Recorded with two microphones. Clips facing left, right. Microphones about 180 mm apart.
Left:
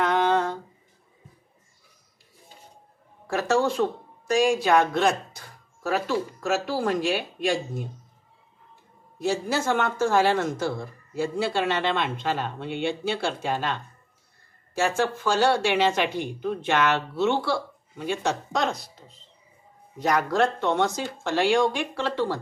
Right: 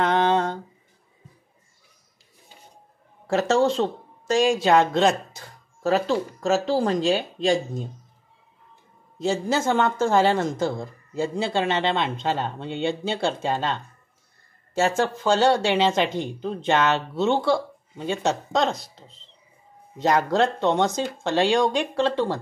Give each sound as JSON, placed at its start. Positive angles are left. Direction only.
{"t": 0.0, "sound": "a sound", "side_deg": -20}
{"t": 3.3, "sound": "speech", "side_deg": -25}
{"t": 9.2, "sound": "speech", "side_deg": -20}
{"t": 18.8, "sound": "speech", "side_deg": 0}
{"t": 20.0, "sound": "speech", "side_deg": -25}